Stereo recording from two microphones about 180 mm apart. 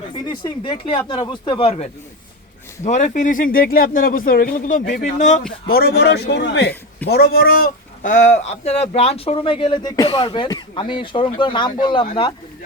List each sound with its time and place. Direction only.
0.1 s speech: 25° left (ahead or behind); by 5.5 s 40° left (ahead or behind)
5.6 s a man's voice: 60° left (ahead or behind)
7.1 s speech: 60° left (ahead or behind); by 12.0 s 25° left (ahead or behind)